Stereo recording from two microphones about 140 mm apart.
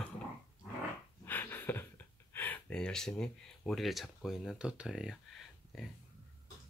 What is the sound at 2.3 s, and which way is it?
Speech, 15° left (ahead or behind).